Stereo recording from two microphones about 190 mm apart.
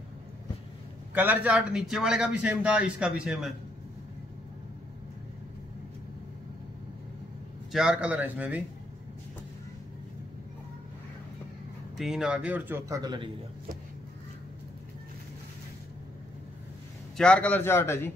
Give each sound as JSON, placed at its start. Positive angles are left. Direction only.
{"t": 1.1, "sound": "a man's voice", "side_deg": -10}
{"t": 7.7, "sound": "speech", "side_deg": -5}
{"t": 12.0, "sound": "speech", "side_deg": 0}
{"t": 17.2, "sound": "a man's voice", "side_deg": 5}